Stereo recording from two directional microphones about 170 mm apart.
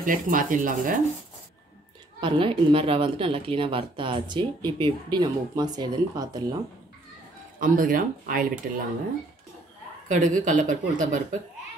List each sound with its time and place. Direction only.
0.0 s speech: 50° right (ahead or behind)
2.1 s a woman's voice: 30° right (ahead or behind)
7.6 s speech: 55° right (ahead or behind)
10.0 s speech: 50° right (ahead or behind)